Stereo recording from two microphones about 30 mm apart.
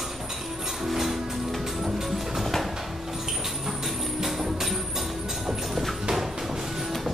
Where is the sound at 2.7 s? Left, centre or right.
Centre.